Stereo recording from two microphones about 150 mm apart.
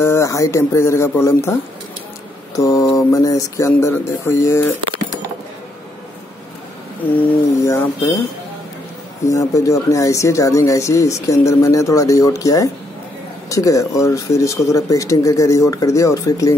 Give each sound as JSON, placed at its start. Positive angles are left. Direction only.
{"t": 0.0, "sound": "speech", "side_deg": 20}
{"t": 7.2, "sound": "a sound", "side_deg": 15}
{"t": 9.2, "sound": "speech", "side_deg": 20}